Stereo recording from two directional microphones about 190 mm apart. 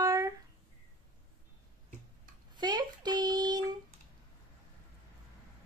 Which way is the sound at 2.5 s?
20° right (ahead or behind).